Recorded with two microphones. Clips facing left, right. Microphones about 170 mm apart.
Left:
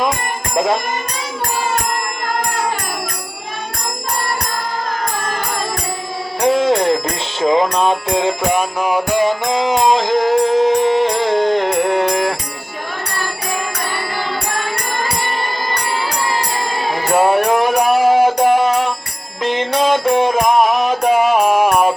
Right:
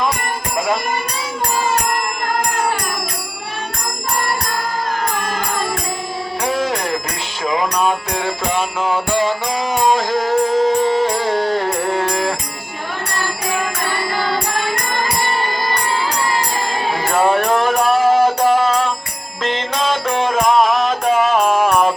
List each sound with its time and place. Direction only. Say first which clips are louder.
6.4 s music: left 7 dB; 25° left (ahead or behind)
7.4 s mantra: left 4 dB; 25° left (ahead or behind)
17.2 s music: left 2 dB; 10° left (ahead or behind)
19.4 s mantra: left 4 dB; 15° left (ahead or behind)